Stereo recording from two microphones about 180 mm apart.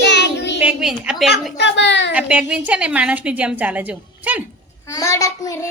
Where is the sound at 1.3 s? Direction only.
75° left (ahead or behind).